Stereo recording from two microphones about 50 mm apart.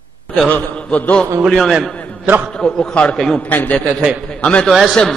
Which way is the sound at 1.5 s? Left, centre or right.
Centre.